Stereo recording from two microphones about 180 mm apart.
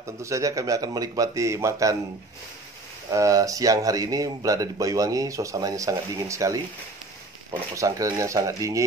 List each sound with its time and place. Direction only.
0.0 s speech: 15° right (ahead or behind)
3.1 s speech: 20° right (ahead or behind)
7.7 s speech: 15° right (ahead or behind)